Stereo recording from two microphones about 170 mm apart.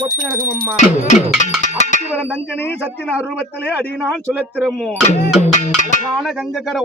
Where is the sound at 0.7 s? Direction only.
45° left (ahead or behind).